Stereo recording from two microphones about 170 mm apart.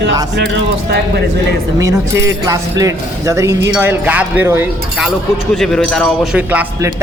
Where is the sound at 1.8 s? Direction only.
20° right (ahead or behind).